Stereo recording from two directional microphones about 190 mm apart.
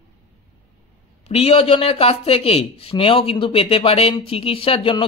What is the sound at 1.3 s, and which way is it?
Speech, 30° left (ahead or behind).